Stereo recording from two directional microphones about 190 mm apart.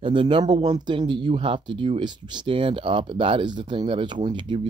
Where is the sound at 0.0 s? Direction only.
25° right (ahead or behind).